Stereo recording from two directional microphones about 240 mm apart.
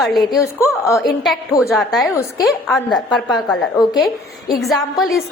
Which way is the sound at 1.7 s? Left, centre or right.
Centre.